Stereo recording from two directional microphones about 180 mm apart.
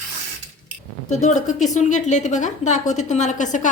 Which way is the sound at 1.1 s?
40° left (ahead or behind).